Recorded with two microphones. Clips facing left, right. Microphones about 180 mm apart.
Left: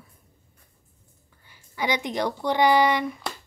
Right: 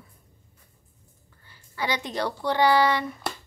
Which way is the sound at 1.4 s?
15° left (ahead or behind).